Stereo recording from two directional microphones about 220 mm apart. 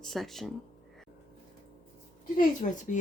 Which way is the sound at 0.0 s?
Centre (ahead or behind).